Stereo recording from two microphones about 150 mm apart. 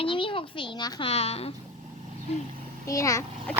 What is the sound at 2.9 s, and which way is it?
Speech, 20° left (ahead or behind).